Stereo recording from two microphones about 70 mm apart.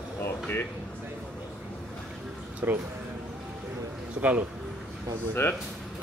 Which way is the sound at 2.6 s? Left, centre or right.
Right.